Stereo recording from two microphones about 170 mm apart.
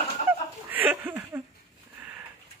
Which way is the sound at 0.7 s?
10° right (ahead or behind).